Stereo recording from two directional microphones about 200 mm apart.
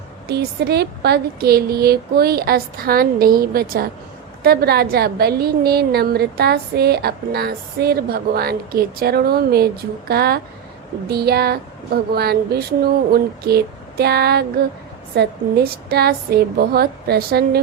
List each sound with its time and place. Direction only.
0.3 s a woman's voice: 55° right (ahead or behind)